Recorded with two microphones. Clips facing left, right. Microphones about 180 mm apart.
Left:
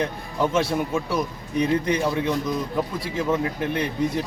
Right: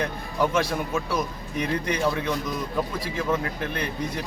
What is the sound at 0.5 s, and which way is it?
A man's voice, 25° left (ahead or behind).